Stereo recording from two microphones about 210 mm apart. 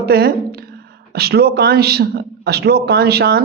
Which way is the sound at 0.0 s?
50° right (ahead or behind).